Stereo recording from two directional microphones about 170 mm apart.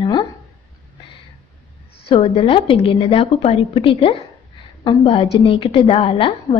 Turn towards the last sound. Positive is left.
turn(degrees=35)  # may be behind; listen again after turning